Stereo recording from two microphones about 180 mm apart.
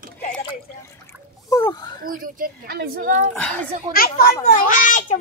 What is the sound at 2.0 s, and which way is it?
A woman's voice, 50° right (ahead or behind).